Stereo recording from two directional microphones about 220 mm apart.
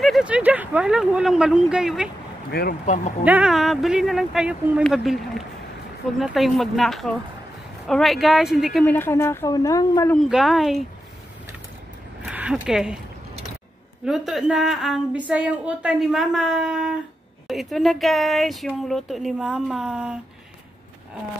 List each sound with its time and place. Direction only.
0.0 s a woman's voice: 5° right (ahead or behind)
2.5 s speech: 40° left (ahead or behind)
3.3 s a woman's voice: 5° right (ahead or behind)
8.9 s a woman's voice: 10° left (ahead or behind)
10.1 s a woman's voice: centre (ahead or behind)
12.3 s speech: 5° right (ahead or behind)
14.0 s a woman's voice: centre (ahead or behind)